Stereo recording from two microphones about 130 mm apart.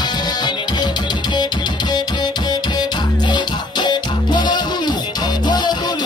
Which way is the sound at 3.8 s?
35° left (ahead or behind).